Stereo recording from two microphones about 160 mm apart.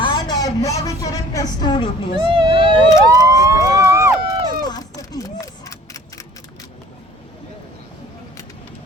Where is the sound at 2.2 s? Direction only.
30° right (ahead or behind).